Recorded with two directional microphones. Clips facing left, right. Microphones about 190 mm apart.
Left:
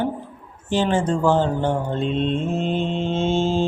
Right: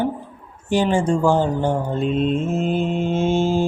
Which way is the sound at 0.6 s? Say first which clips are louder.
Right 2 dB; 15° right (ahead or behind).